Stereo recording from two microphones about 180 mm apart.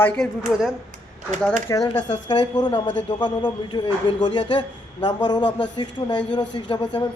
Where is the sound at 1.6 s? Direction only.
20° left (ahead or behind).